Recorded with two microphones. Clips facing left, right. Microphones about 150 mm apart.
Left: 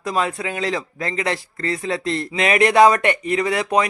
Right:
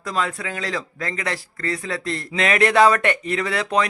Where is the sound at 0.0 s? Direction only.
20° left (ahead or behind).